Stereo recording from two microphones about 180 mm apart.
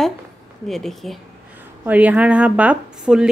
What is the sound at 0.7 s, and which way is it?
Speech, centre (ahead or behind).